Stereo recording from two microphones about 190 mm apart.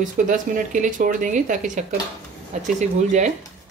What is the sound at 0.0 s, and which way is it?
Speech, 40° right (ahead or behind).